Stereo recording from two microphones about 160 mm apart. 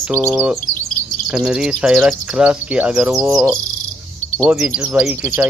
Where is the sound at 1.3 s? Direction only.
5° right (ahead or behind).